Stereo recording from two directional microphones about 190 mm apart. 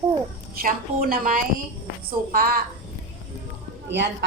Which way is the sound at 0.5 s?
50° right (ahead or behind).